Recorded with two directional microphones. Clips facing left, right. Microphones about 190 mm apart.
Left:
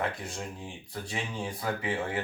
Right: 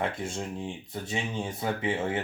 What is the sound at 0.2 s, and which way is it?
Speech, 25° right (ahead or behind).